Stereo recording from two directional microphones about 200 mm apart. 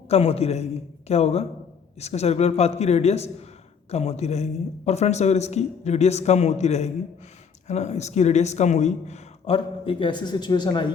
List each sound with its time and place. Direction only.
0.1 s a man's voice: 30° left (ahead or behind)